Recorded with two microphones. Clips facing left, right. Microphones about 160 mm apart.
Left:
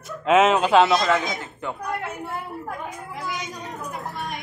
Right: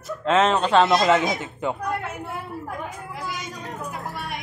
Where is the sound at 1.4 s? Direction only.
20° right (ahead or behind).